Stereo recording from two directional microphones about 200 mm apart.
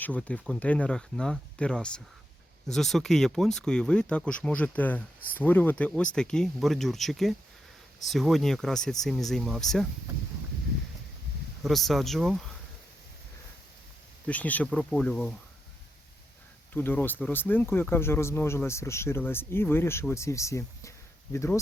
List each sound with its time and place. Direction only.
0.0 s speech: 5° left (ahead or behind)
11.6 s speech: centre (ahead or behind)
14.3 s speech: 5° left (ahead or behind)
16.7 s speech: 10° left (ahead or behind)